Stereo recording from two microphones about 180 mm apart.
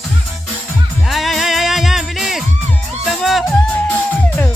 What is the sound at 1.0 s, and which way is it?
Music, centre (ahead or behind).